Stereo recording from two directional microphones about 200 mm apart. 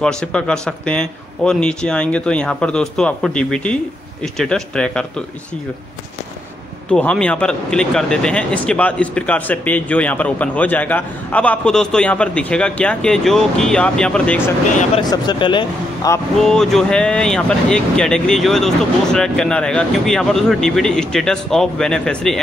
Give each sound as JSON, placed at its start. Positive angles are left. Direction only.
{"t": 0.0, "sound": "a man's voice", "side_deg": 5}
{"t": 6.9, "sound": "a man's voice", "side_deg": 5}
{"t": 15.0, "sound": "a man's voice", "side_deg": 20}
{"t": 16.3, "sound": "a man's voice", "side_deg": 0}